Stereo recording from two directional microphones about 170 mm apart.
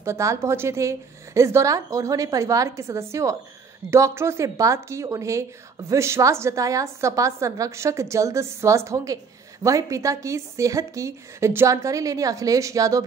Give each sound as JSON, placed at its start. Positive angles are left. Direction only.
{"t": 0.0, "sound": "a woman's voice", "side_deg": -15}